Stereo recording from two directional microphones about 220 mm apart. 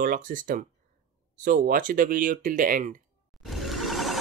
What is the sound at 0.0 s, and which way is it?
Speech, 40° right (ahead or behind).